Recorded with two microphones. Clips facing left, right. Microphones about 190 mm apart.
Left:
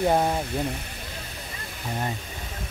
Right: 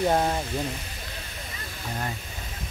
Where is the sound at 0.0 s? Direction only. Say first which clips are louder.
Left 1 dB; 15° left (ahead or behind).